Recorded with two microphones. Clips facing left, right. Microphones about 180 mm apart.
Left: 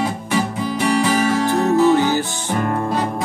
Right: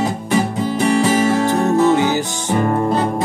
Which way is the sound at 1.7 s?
20° right (ahead or behind).